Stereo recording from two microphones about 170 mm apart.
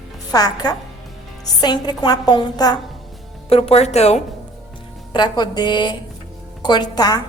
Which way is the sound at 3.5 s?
40° left (ahead or behind).